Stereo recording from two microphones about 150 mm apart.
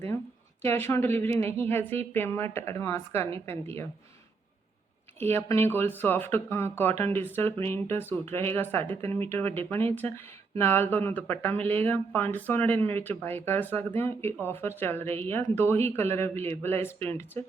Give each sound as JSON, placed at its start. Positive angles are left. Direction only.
{"t": 0.6, "sound": "speech", "side_deg": 15}
{"t": 5.2, "sound": "speech", "side_deg": 15}